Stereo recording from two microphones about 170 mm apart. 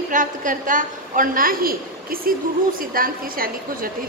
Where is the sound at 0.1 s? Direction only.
50° right (ahead or behind).